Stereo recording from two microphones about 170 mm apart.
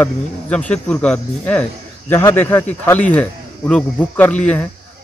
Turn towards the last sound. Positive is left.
turn(degrees=10)  # may be behind; listen again after turning